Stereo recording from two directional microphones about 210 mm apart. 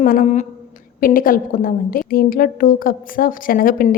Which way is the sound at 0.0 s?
40° left (ahead or behind).